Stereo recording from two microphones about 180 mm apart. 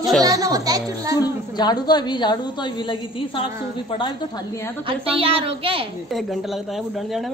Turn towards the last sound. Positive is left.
turn(degrees=-30)  # may be behind; listen again after turning